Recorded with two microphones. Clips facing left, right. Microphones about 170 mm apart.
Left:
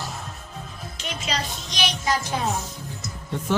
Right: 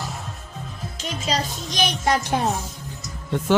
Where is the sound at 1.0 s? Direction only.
45° right (ahead or behind).